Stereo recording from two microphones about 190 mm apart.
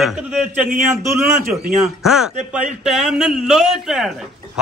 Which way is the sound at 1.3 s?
45° right (ahead or behind).